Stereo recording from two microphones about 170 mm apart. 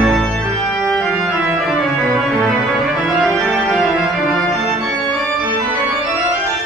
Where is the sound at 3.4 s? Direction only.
Centre (ahead or behind).